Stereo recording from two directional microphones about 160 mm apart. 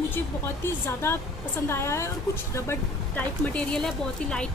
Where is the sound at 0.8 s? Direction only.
15° left (ahead or behind).